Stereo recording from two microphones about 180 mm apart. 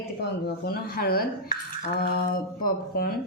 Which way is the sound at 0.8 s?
55° left (ahead or behind).